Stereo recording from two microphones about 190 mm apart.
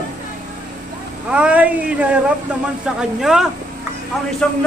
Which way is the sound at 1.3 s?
5° right (ahead or behind).